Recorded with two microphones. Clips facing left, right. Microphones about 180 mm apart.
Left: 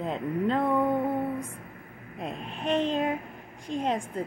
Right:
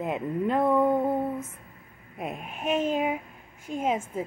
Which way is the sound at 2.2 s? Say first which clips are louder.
Right 1 dB; 5° right (ahead or behind).